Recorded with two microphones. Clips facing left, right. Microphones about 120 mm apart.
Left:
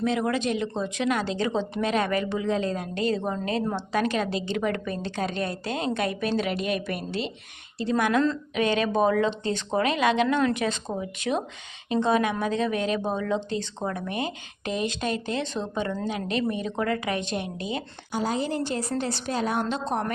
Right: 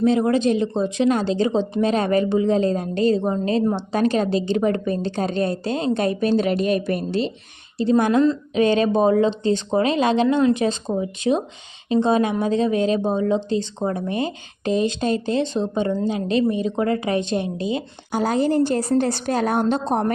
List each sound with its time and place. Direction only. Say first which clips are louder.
0.0 s speech: right 8 dB; 30° right (ahead or behind)
18.1 s a woman's voice: right 7 dB; 55° right (ahead or behind)